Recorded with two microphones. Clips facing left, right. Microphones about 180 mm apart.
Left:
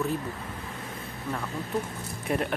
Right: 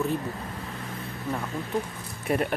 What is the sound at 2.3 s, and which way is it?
Speech, centre (ahead or behind).